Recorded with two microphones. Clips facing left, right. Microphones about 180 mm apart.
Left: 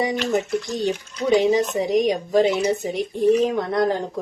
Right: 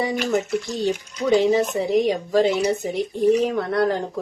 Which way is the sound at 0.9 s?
20° left (ahead or behind).